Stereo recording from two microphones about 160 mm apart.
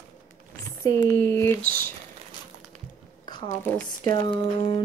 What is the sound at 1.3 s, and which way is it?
Speech, 15° left (ahead or behind).